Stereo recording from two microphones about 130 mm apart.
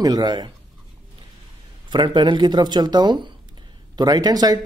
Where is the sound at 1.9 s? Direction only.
35° right (ahead or behind).